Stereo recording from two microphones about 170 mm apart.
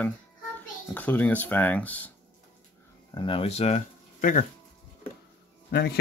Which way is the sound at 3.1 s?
30° left (ahead or behind).